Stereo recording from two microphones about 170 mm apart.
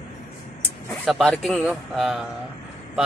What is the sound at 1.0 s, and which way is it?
Speech, centre (ahead or behind).